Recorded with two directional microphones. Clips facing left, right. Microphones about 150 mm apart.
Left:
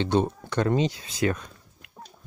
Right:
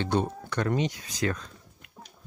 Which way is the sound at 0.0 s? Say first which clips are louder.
Left 3 dB; 25° left (ahead or behind).